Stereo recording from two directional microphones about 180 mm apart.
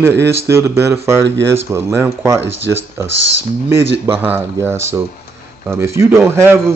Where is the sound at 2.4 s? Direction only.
90° right.